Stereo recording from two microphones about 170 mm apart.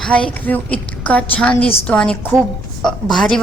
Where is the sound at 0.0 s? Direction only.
5° left (ahead or behind).